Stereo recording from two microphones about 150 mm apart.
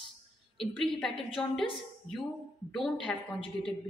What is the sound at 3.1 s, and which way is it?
Speech, 10° left (ahead or behind).